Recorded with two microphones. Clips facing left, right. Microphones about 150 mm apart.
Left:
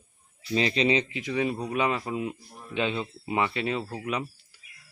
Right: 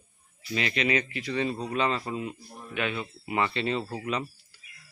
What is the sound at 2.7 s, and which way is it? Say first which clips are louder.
Speech: left 3 dB; 25° left (ahead or behind).